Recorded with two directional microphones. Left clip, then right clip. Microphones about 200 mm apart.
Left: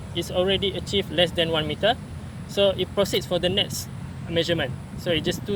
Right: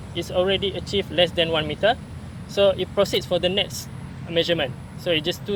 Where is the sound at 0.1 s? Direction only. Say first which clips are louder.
Right 1 dB; 20° left (ahead or behind).